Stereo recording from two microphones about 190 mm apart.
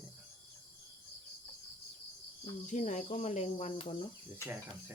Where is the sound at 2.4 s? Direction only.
40° left (ahead or behind).